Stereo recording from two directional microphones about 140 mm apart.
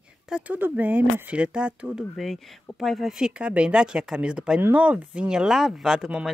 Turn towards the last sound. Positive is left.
turn(degrees=-5)  # may be behind; listen again after turning